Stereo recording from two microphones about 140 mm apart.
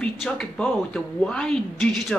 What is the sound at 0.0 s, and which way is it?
Speech, 5° left (ahead or behind).